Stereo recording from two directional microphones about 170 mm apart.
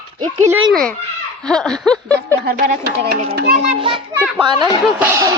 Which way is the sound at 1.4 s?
5° left (ahead or behind).